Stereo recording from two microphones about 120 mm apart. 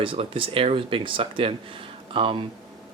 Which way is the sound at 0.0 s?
45° right (ahead or behind).